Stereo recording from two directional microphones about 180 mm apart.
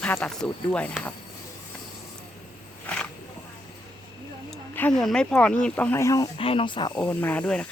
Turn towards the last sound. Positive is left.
turn(degrees=5)  # may be behind; listen again after turning